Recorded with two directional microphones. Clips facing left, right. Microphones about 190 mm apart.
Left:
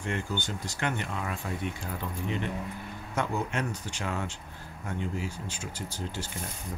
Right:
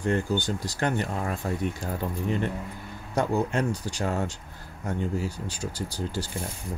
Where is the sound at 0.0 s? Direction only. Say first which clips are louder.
Right 7 dB; 40° right (ahead or behind).